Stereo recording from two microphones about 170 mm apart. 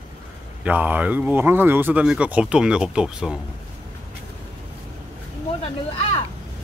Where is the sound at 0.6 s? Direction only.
10° right (ahead or behind).